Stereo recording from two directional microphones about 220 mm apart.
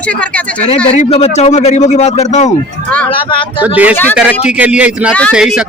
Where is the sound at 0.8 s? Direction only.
30° left (ahead or behind).